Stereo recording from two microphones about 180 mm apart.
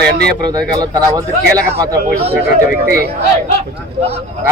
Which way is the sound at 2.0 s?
35° right (ahead or behind).